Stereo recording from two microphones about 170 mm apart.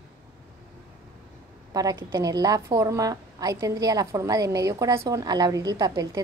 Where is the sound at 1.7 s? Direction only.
20° right (ahead or behind).